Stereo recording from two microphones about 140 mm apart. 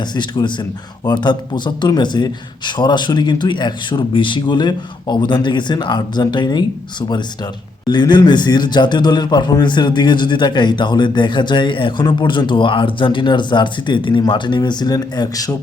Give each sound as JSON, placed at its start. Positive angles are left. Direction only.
{"t": 0.0, "sound": "a man's voice", "side_deg": 30}
{"t": 7.9, "sound": "a man's voice", "side_deg": 30}